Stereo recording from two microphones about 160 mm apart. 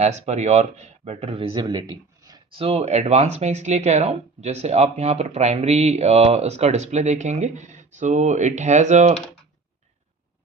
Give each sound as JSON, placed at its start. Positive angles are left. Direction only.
{"t": 0.0, "sound": "speech", "side_deg": -45}